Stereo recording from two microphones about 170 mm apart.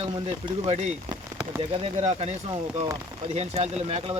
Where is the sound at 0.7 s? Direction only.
40° right (ahead or behind).